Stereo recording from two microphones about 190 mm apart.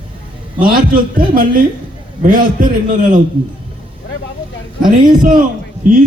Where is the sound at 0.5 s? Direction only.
45° right (ahead or behind).